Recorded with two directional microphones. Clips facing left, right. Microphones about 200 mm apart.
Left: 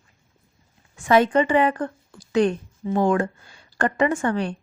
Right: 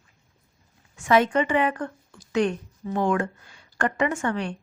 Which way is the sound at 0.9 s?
35° left (ahead or behind).